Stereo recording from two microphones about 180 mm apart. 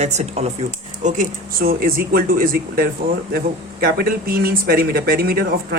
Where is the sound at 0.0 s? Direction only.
40° right (ahead or behind).